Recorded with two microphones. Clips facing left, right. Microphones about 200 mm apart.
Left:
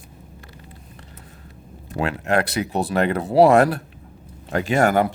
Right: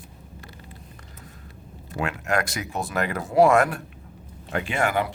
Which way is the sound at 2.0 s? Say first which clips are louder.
Left 5 dB; 30° left (ahead or behind).